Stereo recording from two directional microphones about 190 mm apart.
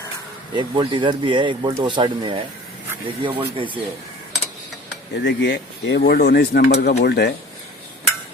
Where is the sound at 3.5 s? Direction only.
25° right (ahead or behind).